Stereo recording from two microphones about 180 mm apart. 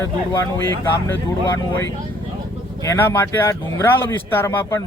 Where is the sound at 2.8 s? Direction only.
15° left (ahead or behind).